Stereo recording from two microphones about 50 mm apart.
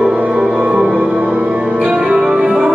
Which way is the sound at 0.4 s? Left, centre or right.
Centre.